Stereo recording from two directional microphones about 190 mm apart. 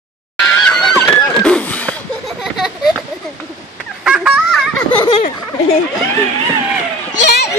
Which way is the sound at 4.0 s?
5° right (ahead or behind).